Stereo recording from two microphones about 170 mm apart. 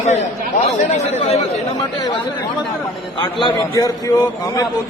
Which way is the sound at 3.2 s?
25° left (ahead or behind).